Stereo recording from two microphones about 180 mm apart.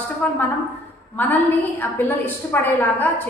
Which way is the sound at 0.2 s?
5° left (ahead or behind).